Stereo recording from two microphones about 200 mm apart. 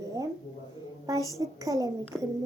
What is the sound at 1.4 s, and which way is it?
Speech, 15° right (ahead or behind).